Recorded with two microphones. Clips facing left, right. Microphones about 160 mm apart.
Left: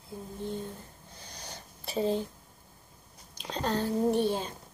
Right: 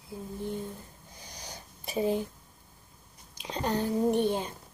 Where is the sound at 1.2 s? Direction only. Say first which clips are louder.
Even; 15° right (ahead or behind).